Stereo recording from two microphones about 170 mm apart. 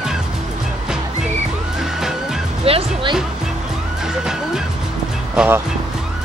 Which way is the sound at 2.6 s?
30° right (ahead or behind).